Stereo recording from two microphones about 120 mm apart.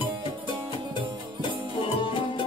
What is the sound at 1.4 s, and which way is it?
Music, 45° left (ahead or behind).